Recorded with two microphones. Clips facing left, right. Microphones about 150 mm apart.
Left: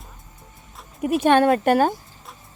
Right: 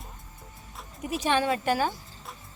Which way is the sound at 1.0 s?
60° left (ahead or behind).